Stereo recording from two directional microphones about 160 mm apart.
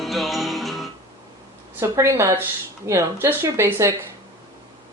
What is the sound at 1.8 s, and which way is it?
Speech, 15° right (ahead or behind).